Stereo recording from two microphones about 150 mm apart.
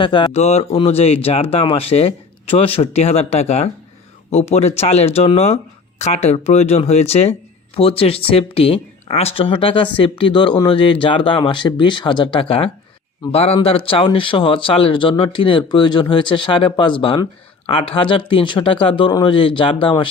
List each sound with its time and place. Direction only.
0.0 s speech: 30° left (ahead or behind)
0.3 s speech: 45° left (ahead or behind)